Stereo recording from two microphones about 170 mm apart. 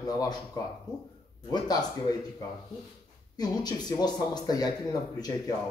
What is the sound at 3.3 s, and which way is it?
Speech, 25° left (ahead or behind).